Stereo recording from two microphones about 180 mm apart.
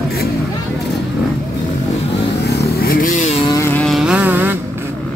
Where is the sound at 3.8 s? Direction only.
Centre (ahead or behind).